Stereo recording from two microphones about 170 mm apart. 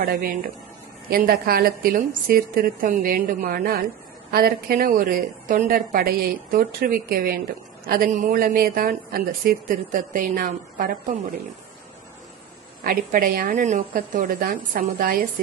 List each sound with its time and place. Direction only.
0.0 s a woman's voice: 60° right (ahead or behind)
12.8 s a woman's voice: 55° right (ahead or behind)